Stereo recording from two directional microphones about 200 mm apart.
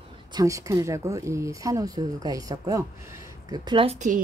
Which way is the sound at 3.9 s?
40° right (ahead or behind).